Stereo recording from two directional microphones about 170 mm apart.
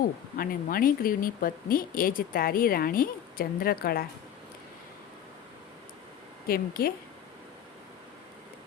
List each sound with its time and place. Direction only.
0.0 s speech: 60° left (ahead or behind)
6.5 s speech: 60° left (ahead or behind)